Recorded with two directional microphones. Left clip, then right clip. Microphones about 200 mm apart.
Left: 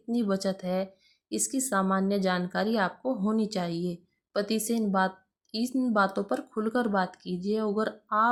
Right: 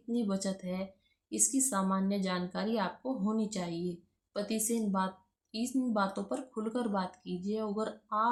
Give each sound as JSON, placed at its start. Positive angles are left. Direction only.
{"t": 0.1, "sound": "a woman's voice", "side_deg": 40}